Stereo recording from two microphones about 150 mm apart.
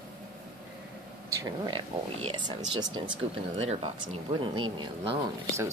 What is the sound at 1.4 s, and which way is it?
Speech, 30° right (ahead or behind).